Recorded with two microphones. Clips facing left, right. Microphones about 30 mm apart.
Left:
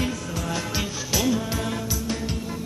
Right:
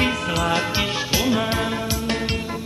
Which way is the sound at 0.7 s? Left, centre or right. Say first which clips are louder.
Right 5 dB; right.